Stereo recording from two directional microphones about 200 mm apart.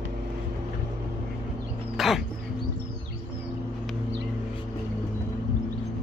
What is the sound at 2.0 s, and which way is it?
Dog, centre (ahead or behind).